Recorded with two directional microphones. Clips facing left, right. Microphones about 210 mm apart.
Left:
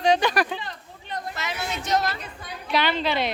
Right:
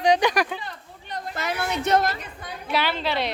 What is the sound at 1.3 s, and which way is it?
Speech, 55° right (ahead or behind).